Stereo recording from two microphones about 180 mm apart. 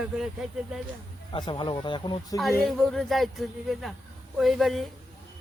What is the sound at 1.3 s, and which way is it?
Speech, 25° left (ahead or behind).